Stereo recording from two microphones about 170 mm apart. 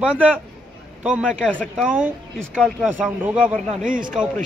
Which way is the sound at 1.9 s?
10° right (ahead or behind).